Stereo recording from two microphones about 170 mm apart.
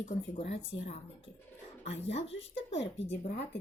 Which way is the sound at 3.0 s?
40° left (ahead or behind).